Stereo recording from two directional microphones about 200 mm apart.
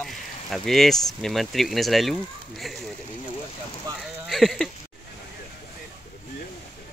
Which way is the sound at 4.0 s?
Centre (ahead or behind).